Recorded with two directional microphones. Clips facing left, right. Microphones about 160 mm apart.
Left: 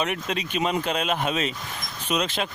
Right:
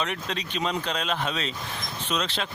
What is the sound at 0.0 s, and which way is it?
Speech, 10° left (ahead or behind).